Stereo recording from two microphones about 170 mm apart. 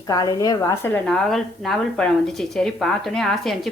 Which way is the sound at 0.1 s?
20° left (ahead or behind).